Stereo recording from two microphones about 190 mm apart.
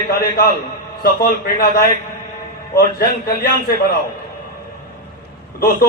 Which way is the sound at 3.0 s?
55° left (ahead or behind).